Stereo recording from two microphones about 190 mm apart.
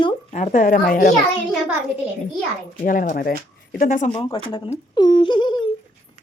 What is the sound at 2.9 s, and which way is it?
A child's voice, 45° left (ahead or behind).